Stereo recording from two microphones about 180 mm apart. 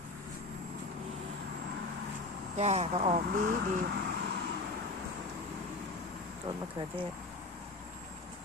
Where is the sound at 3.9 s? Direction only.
70° right (ahead or behind).